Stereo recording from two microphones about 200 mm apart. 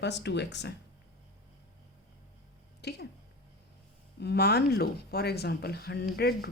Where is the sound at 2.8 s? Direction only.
55° left (ahead or behind).